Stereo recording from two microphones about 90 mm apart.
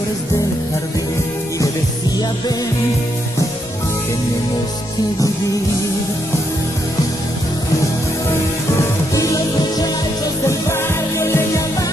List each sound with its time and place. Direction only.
9.1 s music: 40° left (ahead or behind)